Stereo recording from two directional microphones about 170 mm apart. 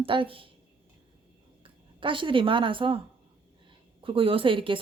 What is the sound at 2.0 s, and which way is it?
A woman's voice, 30° right (ahead or behind).